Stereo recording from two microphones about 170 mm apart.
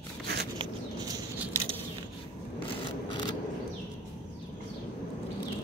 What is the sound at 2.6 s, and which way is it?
Vehicle, 30° left (ahead or behind).